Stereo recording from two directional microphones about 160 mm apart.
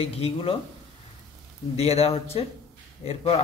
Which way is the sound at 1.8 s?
40° left (ahead or behind).